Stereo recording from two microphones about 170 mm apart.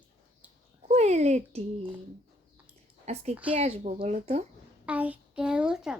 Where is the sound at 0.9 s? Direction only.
40° right (ahead or behind).